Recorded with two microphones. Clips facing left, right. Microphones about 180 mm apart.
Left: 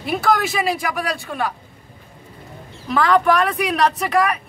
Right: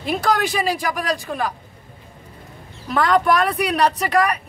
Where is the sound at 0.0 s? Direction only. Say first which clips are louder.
Left 1 dB; 5° left (ahead or behind).